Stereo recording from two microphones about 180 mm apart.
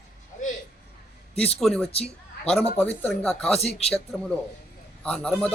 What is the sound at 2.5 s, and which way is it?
A man's voice, 5° left (ahead or behind).